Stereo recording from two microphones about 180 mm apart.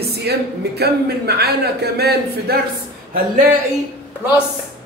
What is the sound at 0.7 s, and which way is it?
A woman's voice, 60° right (ahead or behind).